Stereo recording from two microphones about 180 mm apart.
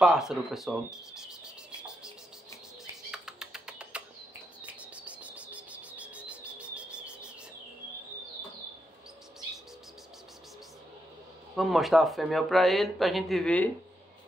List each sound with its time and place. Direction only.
0.0 s speech: 5° right (ahead or behind)
3.1 s typing: 5° right (ahead or behind)
4.6 s bird: 5° right (ahead or behind)
11.5 s speech: centre (ahead or behind)